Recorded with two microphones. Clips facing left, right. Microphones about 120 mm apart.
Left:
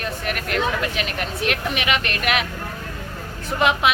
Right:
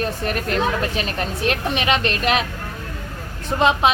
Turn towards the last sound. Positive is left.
turn(degrees=-30)  # may be behind; listen again after turning